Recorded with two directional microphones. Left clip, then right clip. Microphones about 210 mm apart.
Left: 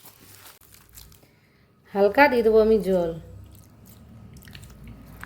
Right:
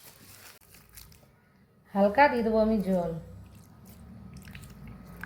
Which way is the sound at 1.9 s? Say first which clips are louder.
Left 4 dB; 50° left (ahead or behind).